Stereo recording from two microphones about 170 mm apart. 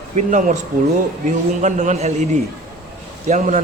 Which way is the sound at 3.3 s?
50° right (ahead or behind).